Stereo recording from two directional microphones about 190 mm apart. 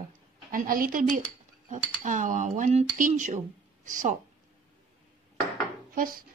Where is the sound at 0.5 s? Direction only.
45° right (ahead or behind).